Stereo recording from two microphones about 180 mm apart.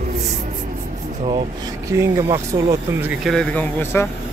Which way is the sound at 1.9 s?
15° right (ahead or behind).